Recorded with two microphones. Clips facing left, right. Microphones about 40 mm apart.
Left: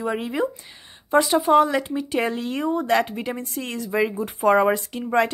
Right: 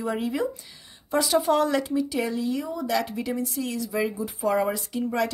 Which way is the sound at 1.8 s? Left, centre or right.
Left.